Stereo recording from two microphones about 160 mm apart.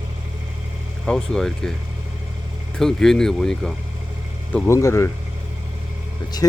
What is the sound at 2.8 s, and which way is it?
Speech, 5° left (ahead or behind).